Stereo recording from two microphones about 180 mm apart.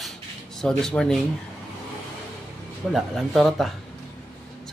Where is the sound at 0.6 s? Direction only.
5° left (ahead or behind).